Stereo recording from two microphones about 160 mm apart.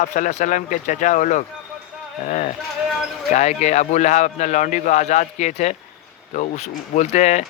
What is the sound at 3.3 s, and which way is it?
Speech, 45° left (ahead or behind).